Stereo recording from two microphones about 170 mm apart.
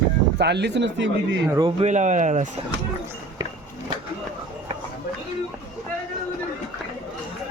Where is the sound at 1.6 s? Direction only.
40° right (ahead or behind).